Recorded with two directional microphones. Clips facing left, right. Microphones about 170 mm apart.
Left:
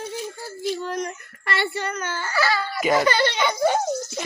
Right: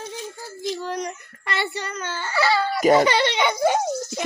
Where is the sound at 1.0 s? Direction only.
20° right (ahead or behind).